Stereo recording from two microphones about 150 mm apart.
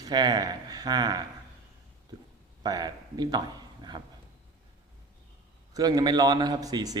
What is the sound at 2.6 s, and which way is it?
A man's voice, 25° right (ahead or behind).